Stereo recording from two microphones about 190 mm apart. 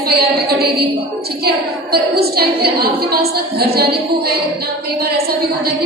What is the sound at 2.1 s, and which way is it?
A woman's voice, 55° right (ahead or behind).